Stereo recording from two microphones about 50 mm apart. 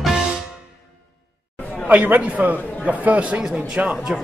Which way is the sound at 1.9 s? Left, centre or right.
Right.